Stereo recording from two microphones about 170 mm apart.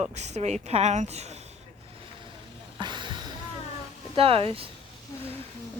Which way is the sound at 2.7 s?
25° right (ahead or behind).